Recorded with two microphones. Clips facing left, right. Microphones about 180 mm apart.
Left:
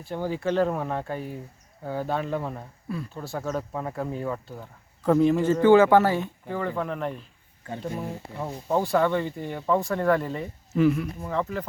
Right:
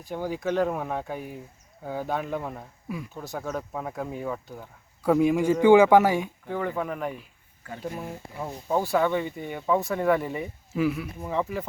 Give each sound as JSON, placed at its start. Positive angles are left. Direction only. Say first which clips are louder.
{"t": 0.1, "sound": "speech", "louder": "left 1 dB", "side_deg": -10}